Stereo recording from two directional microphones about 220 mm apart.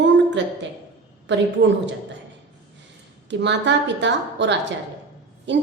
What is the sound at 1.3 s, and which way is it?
Speech, 55° right (ahead or behind).